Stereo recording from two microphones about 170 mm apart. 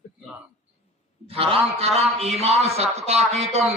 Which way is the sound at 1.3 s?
35° right (ahead or behind).